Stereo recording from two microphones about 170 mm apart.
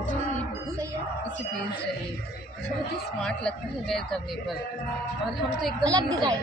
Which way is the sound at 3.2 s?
5° left (ahead or behind).